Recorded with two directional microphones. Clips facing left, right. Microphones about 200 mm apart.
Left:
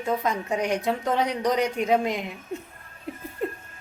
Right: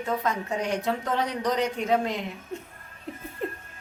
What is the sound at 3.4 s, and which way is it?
Laughter, centre (ahead or behind).